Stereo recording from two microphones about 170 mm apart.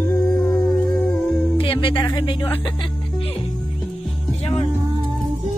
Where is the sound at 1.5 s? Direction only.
30° left (ahead or behind).